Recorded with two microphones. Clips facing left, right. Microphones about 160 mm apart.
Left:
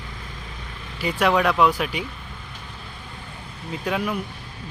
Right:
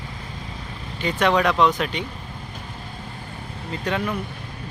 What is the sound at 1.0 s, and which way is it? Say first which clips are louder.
Speech: even; 5° left (ahead or behind).